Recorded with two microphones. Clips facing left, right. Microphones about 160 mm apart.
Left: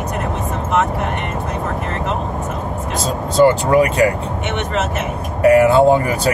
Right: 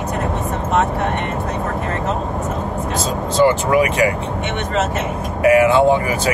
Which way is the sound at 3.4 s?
35° left (ahead or behind).